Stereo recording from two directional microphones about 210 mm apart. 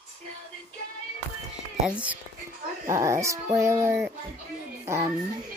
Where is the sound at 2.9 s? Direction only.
15° right (ahead or behind).